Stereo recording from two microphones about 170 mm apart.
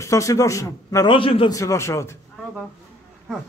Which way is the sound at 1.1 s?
30° left (ahead or behind).